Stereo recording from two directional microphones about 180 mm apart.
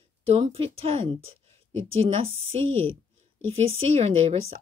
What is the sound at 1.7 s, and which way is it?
Speech, 90° right.